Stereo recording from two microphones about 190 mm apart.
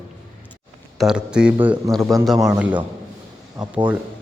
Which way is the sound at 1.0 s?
5° right (ahead or behind).